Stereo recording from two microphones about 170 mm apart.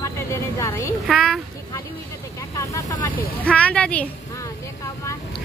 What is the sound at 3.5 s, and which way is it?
Speech, 5° left (ahead or behind).